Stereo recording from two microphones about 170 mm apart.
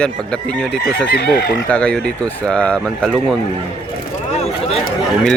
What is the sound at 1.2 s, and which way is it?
Speech, 70° left (ahead or behind).